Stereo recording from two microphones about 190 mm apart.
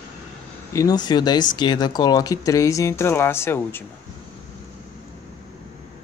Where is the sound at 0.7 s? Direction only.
20° left (ahead or behind).